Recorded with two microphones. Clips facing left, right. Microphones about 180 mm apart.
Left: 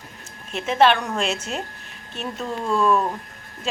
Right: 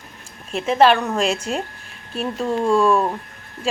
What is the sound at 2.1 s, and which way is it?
Speech, 35° right (ahead or behind).